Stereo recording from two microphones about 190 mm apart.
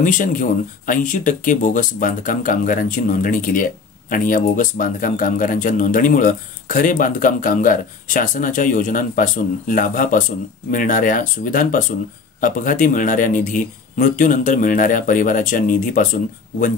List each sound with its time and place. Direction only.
0.0 s speech: 45° left (ahead or behind)